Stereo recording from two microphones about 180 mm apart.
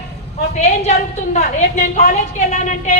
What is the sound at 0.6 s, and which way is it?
A woman's voice, 40° left (ahead or behind).